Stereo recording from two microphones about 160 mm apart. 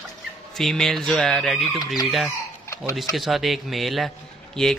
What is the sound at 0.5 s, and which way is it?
A man's voice, centre (ahead or behind).